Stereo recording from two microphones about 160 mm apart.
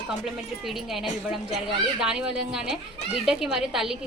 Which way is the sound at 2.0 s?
5° right (ahead or behind).